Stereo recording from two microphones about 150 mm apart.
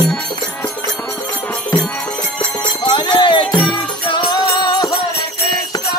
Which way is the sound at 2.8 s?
30° left (ahead or behind).